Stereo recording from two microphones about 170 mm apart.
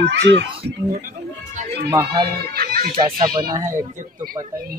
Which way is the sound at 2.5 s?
60° right (ahead or behind).